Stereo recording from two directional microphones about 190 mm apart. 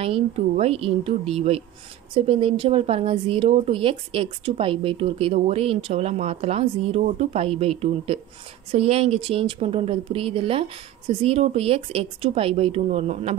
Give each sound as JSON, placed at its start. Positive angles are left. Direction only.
{"t": 0.0, "sound": "speech", "side_deg": -30}